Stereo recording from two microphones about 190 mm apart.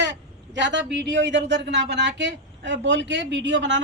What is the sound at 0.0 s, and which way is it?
A man's voice, 65° right (ahead or behind).